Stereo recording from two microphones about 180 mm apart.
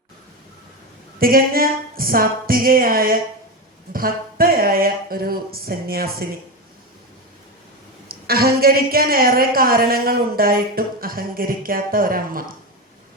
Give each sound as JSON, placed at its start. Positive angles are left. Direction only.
{"t": 1.2, "sound": "a woman's voice", "side_deg": -55}
{"t": 8.0, "sound": "a woman's voice", "side_deg": -55}